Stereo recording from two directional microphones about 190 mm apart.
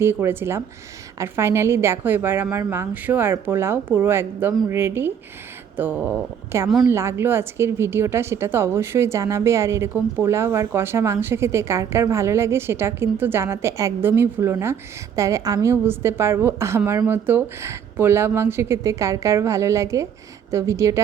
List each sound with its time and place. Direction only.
0.0 s a woman's voice: 10° right (ahead or behind)